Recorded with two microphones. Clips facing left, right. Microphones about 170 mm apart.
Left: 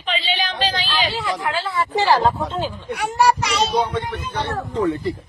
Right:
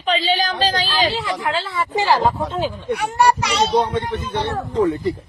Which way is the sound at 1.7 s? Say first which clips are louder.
Left 1 dB; 20° right (ahead or behind).